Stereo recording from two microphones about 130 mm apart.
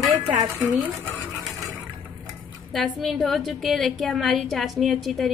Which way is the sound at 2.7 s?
Centre (ahead or behind).